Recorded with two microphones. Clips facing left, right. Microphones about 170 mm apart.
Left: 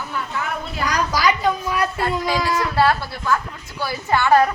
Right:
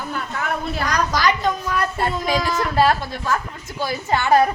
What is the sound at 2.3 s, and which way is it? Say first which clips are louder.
Speech: even; 20° right (ahead or behind).